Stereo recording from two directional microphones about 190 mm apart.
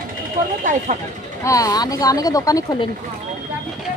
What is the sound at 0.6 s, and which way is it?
Speech, 40° right (ahead or behind).